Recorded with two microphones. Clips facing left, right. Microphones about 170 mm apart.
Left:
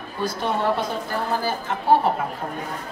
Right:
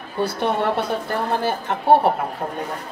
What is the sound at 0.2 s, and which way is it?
Speech, 65° right (ahead or behind).